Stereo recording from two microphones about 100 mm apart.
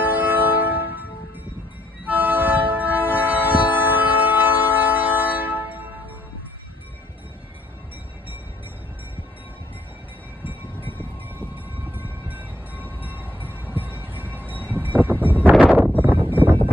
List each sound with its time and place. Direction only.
0.0 s music: 20° right (ahead or behind)
2.0 s train: 20° right (ahead or behind)
11.9 s train: 20° right (ahead or behind)
15.6 s a sound: 20° right (ahead or behind)